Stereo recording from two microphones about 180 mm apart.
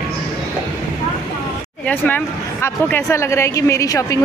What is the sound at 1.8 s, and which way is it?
Speech, 10° left (ahead or behind).